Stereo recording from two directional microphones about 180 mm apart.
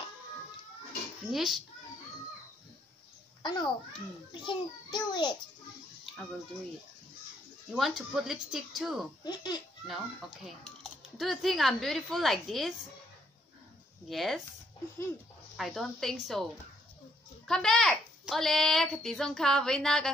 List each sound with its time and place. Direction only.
1.3 s speech: centre (ahead or behind)
3.4 s a child's voice: 25° left (ahead or behind)
7.7 s speech: centre (ahead or behind)
9.2 s a child's voice: 25° left (ahead or behind)
10.4 s speech: centre (ahead or behind)
14.0 s speech: centre (ahead or behind)
15.5 s speech: centre (ahead or behind)
17.5 s speech: 5° left (ahead or behind)